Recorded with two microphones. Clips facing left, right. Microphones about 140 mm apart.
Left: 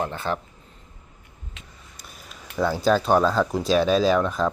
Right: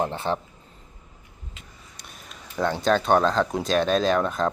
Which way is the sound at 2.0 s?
Centre (ahead or behind).